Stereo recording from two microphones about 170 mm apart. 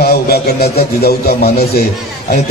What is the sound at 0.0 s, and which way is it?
A man's voice, 70° left (ahead or behind).